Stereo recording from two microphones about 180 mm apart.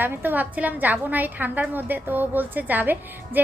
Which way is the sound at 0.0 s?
10° right (ahead or behind).